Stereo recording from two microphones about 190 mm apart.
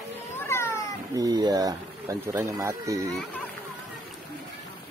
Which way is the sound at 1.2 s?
20° right (ahead or behind).